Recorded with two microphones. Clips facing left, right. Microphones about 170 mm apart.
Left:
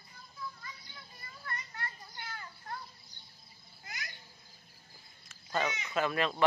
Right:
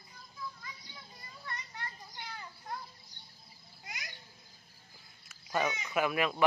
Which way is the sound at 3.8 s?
15° right (ahead or behind).